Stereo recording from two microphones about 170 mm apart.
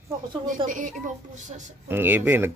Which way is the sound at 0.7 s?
50° right (ahead or behind).